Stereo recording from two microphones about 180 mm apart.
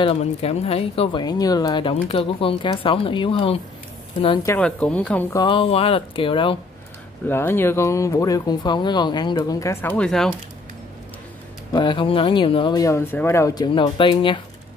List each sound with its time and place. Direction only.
0.0 s speech: 35° left (ahead or behind)
4.6 s speech: 5° left (ahead or behind)
5.3 s speech: 25° left (ahead or behind)
7.2 s speech: 10° left (ahead or behind)
11.7 s speech: 25° left (ahead or behind)
13.7 s speech: 25° left (ahead or behind)